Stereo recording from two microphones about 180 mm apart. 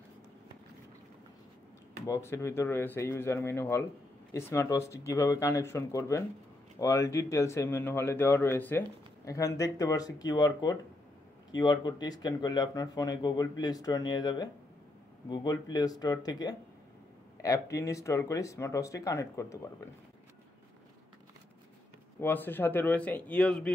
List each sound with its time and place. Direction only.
2.0 s a man's voice: 15° left (ahead or behind)
17.7 s a man's voice: 15° left (ahead or behind)
22.2 s a man's voice: 10° left (ahead or behind)